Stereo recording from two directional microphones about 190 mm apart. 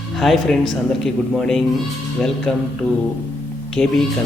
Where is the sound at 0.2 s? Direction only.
Centre (ahead or behind).